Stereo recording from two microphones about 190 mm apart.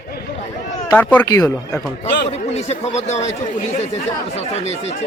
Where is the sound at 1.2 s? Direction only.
20° left (ahead or behind).